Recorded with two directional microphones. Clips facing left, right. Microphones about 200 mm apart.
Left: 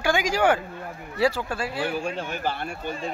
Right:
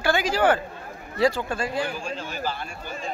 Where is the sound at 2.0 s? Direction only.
60° left (ahead or behind).